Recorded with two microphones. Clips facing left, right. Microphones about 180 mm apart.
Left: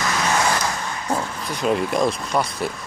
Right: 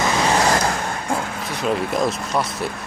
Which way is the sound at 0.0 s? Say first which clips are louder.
Right 3 dB; 30° right (ahead or behind).